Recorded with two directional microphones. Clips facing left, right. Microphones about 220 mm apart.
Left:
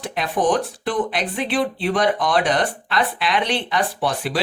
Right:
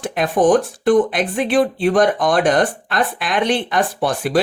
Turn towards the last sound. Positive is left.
turn(degrees=-50)  # may be behind; listen again after turning